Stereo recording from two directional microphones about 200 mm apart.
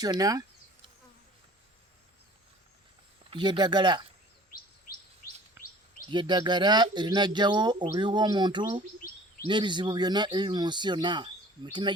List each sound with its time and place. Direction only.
0.0 s insect: 20° right (ahead or behind)
3.2 s speech: 25° right (ahead or behind)
4.5 s bird: 45° left (ahead or behind)
5.6 s bird vocalization: 10° right (ahead or behind)
6.1 s speech: 20° right (ahead or behind)